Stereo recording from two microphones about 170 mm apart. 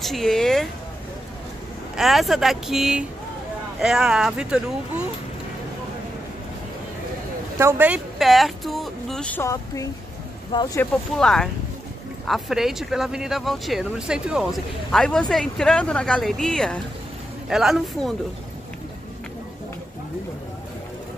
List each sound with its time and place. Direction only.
0.0 s a woman's voice: centre (ahead or behind)
2.0 s speech: centre (ahead or behind)
7.5 s speech: 15° right (ahead or behind); by 10.8 s 25° left (ahead or behind)
10.8 s speech: 5° left (ahead or behind)